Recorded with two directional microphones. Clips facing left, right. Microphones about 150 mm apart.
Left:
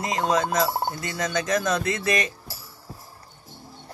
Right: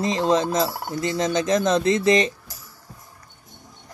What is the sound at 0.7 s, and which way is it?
Turkey, 25° left (ahead or behind).